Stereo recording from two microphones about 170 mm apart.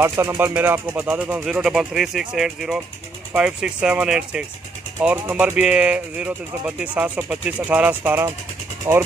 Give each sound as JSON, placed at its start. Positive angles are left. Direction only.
{"t": 0.0, "sound": "speech", "side_deg": -15}